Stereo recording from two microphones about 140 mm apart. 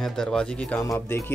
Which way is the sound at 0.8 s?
20° left (ahead or behind).